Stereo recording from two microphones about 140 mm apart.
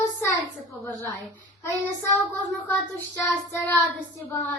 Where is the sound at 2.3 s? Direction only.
10° left (ahead or behind).